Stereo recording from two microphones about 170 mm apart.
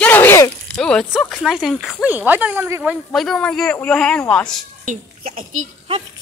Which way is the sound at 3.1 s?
Centre (ahead or behind).